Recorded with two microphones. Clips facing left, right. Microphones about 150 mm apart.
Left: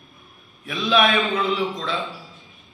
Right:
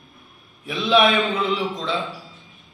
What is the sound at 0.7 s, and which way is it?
Speech, 25° right (ahead or behind).